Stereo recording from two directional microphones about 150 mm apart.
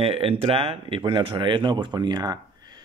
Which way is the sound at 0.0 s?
40° right (ahead or behind).